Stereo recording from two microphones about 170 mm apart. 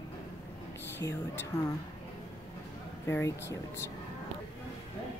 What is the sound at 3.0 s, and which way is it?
Speech, 15° left (ahead or behind).